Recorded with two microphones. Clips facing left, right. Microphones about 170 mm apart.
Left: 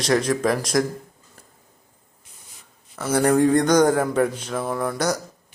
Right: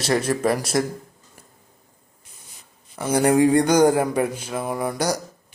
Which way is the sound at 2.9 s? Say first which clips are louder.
Right 1 dB; 15° right (ahead or behind).